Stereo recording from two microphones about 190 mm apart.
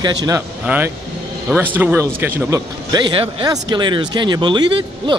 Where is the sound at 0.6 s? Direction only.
10° right (ahead or behind).